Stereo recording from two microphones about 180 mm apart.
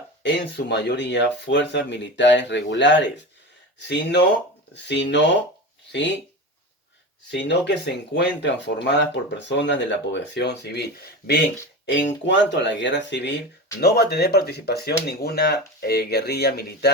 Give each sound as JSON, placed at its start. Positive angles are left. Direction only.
{"t": 0.2, "sound": "speech", "side_deg": 70}
{"t": 4.7, "sound": "speech", "side_deg": 75}
{"t": 5.9, "sound": "speech", "side_deg": 90}
{"t": 7.3, "sound": "speech", "side_deg": 75}
{"t": 12.2, "sound": "speech", "side_deg": 80}
{"t": 13.8, "sound": "speech", "side_deg": 65}